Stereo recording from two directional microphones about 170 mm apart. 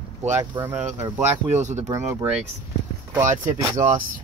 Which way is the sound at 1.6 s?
45° right (ahead or behind).